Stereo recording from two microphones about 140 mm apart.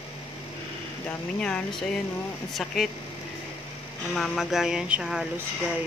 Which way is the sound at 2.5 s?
Centre (ahead or behind).